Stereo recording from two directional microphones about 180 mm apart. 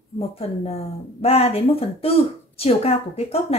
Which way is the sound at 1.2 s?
35° left (ahead or behind).